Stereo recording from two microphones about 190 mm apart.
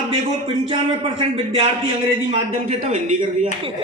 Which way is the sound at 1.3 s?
30° right (ahead or behind).